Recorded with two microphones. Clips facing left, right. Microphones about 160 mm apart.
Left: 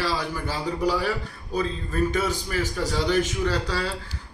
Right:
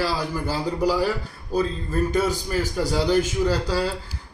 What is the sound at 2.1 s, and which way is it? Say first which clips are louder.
A man's voice: right 3 dB; 10° right (ahead or behind).